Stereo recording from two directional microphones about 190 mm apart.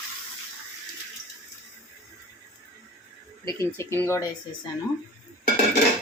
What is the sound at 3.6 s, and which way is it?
Speech, 15° left (ahead or behind).